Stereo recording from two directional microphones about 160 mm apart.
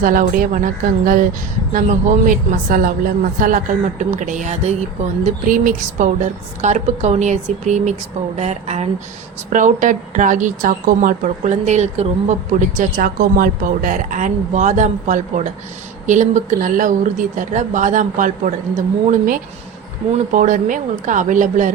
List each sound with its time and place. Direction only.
0.0 s a woman's voice: 60° right (ahead or behind)